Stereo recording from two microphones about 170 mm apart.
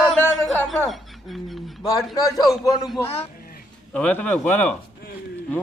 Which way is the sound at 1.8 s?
20° left (ahead or behind).